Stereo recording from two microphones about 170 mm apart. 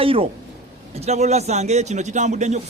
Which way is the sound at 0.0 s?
35° right (ahead or behind).